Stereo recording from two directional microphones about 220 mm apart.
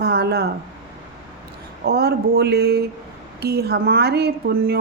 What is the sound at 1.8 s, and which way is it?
Speech, 45° right (ahead or behind).